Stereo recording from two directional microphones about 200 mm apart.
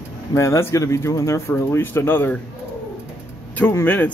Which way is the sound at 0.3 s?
15° left (ahead or behind).